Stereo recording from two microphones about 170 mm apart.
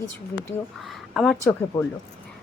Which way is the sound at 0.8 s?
Centre (ahead or behind).